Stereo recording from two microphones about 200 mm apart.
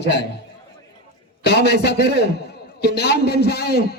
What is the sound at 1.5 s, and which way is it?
A man's voice, 55° left (ahead or behind).